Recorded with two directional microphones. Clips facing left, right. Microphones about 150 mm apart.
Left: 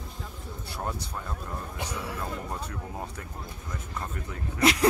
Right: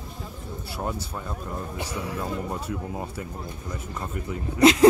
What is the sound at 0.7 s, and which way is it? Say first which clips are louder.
Speech: right 3 dB; 5° right (ahead or behind).